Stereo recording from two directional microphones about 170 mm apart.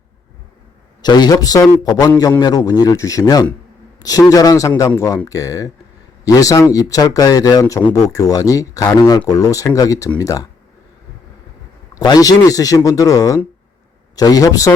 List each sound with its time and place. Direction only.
1.0 s speech: 25° left (ahead or behind)
11.9 s speech: 20° left (ahead or behind)